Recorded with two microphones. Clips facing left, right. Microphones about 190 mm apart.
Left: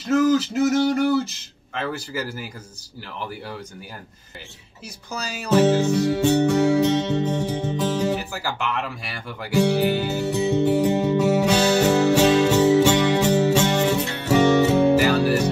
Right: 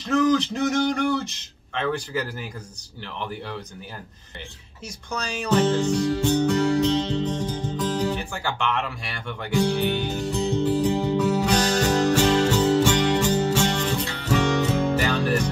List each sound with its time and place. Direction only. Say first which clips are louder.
0.0 s speech: left 2 dB; 5° left (ahead or behind)
5.1 s speech: right 2 dB; 5° left (ahead or behind)
5.6 s music: left 4 dB; 70° left (ahead or behind)
8.3 s speech: even; 5° left (ahead or behind)
9.6 s music: left 4 dB; 70° left (ahead or behind)